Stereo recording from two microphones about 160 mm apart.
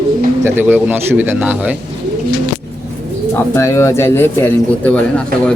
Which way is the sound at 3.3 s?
15° left (ahead or behind).